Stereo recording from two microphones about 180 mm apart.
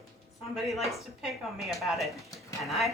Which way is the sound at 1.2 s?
Centre (ahead or behind).